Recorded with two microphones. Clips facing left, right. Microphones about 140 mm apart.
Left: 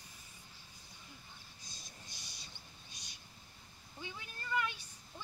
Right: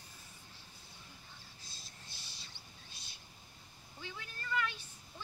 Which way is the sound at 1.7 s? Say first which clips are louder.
Left 4 dB; 15° left (ahead or behind).